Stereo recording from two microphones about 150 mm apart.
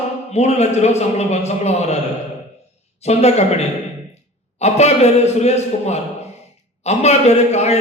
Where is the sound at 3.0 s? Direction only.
45° left (ahead or behind).